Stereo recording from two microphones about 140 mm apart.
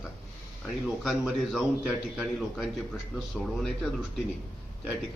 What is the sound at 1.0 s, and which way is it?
Speech, 5° right (ahead or behind).